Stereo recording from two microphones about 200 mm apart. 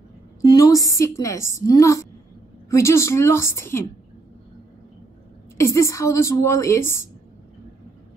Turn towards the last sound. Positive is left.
turn(degrees=15)  # may be behind; listen again after turning